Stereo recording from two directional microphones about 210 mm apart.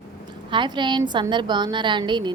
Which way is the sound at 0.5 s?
20° right (ahead or behind).